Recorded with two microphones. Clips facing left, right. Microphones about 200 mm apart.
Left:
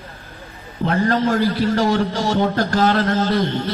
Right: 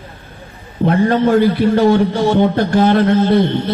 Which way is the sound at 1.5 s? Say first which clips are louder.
Right 6 dB; 60° right (ahead or behind).